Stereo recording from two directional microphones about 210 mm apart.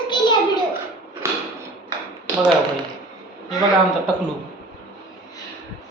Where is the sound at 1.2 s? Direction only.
15° right (ahead or behind).